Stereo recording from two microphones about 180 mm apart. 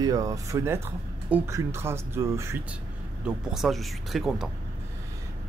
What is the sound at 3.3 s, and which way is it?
Speech, 5° right (ahead or behind).